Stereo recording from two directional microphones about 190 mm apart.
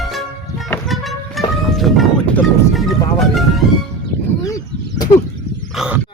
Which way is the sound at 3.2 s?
Centre (ahead or behind).